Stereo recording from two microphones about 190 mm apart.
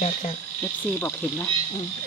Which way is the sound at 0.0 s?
40° left (ahead or behind).